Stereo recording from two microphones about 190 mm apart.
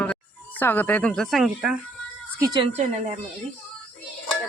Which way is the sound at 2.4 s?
20° right (ahead or behind).